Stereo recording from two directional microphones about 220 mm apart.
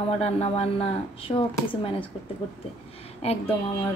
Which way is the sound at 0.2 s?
25° left (ahead or behind).